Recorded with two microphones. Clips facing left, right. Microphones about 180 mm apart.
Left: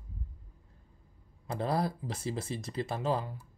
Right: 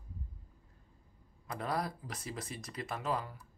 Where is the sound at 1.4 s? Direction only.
30° left (ahead or behind).